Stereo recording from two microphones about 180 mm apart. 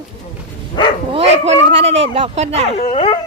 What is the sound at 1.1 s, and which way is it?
Bow-wow, 35° right (ahead or behind).